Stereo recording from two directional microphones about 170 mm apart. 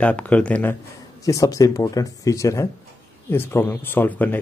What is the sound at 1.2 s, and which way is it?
Speech, 20° left (ahead or behind).